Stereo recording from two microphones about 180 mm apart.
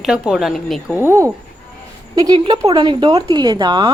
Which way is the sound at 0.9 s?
15° right (ahead or behind).